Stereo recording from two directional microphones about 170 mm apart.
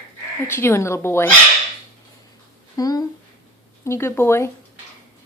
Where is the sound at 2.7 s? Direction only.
20° left (ahead or behind).